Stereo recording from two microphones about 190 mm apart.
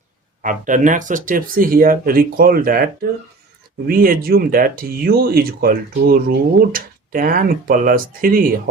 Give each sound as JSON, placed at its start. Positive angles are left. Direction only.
{"t": 0.4, "sound": "speech", "side_deg": -45}